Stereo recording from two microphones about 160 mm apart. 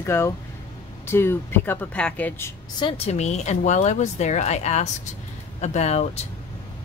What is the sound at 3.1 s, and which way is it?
A woman's voice, 45° left (ahead or behind).